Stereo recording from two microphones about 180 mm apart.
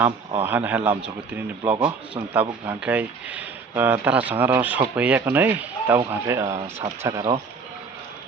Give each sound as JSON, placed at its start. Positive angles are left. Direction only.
{"t": 0.4, "sound": "speech", "side_deg": -10}